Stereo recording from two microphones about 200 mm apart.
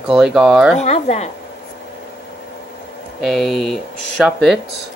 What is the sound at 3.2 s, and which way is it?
Speech, centre (ahead or behind).